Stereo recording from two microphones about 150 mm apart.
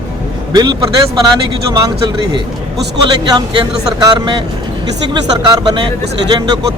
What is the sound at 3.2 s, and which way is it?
Speech, 30° right (ahead or behind).